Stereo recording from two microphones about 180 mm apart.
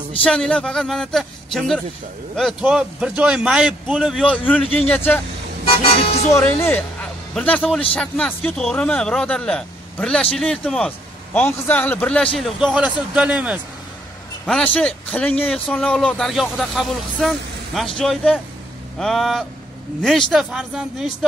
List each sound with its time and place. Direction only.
0.2 s speech: 5° left (ahead or behind)
5.7 s speech: 30° left (ahead or behind)
6.2 s a man's voice: 10° left (ahead or behind); by 13.6 s 5° right (ahead or behind)
14.4 s speech: 5° left (ahead or behind)